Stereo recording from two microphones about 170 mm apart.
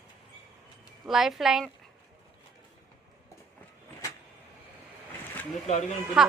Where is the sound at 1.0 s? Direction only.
Centre (ahead or behind).